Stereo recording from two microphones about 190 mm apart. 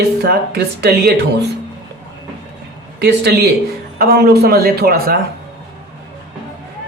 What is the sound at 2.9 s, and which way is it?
Speech, 60° right (ahead or behind).